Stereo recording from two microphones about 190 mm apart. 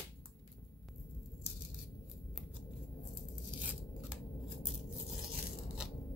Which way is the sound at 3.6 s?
5° right (ahead or behind).